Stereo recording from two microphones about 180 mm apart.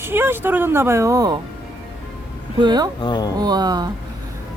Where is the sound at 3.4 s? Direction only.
20° right (ahead or behind).